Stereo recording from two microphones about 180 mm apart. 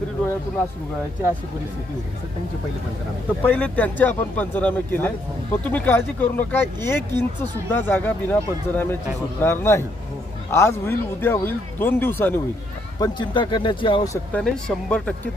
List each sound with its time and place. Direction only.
3.4 s speech: 10° left (ahead or behind)
13.0 s speech: 25° left (ahead or behind)
14.3 s speech: 5° left (ahead or behind)